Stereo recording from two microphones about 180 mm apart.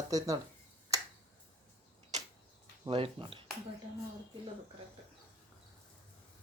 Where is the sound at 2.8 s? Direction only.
30° right (ahead or behind).